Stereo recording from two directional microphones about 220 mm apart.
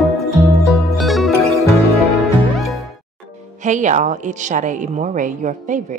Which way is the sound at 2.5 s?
Centre (ahead or behind).